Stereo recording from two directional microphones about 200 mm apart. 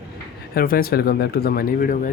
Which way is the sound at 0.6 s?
50° left (ahead or behind).